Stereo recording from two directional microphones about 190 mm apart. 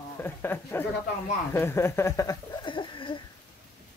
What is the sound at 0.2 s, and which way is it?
Speech, 10° left (ahead or behind).